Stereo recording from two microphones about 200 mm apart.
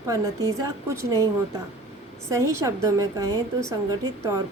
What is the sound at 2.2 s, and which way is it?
A woman's voice, 15° right (ahead or behind).